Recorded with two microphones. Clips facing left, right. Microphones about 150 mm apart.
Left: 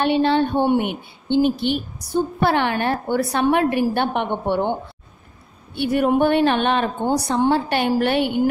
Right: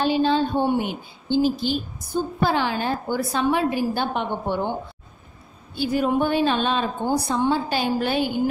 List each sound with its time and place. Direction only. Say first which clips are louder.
0.0 s a woman's voice: left 2 dB; 65° left (ahead or behind)
5.8 s a woman's voice: left 4 dB; 65° left (ahead or behind)